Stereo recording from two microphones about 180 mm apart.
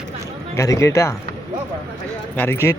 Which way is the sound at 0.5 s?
15° left (ahead or behind).